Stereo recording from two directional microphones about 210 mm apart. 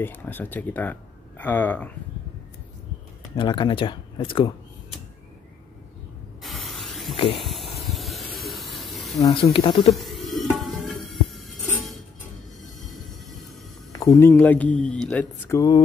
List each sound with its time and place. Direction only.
0.0 s speech: 10° left (ahead or behind)
3.3 s speech: 20° left (ahead or behind)
6.4 s spray: centre (ahead or behind)
7.3 s a sound: centre (ahead or behind)
7.9 s spray: centre (ahead or behind)
8.5 s a sound: centre (ahead or behind)
9.2 s speech: 25° left (ahead or behind)
9.8 s music: centre (ahead or behind)
13.9 s speech: 15° left (ahead or behind)